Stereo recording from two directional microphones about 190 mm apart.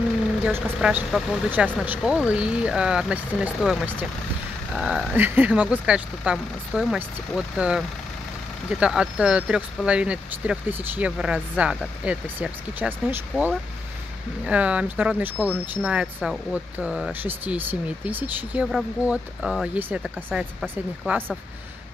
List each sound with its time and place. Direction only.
0.5 s speech: 5° right (ahead or behind)